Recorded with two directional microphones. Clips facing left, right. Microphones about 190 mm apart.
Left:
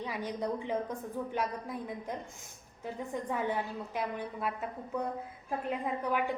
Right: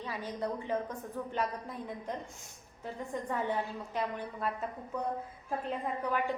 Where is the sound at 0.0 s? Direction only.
15° left (ahead or behind).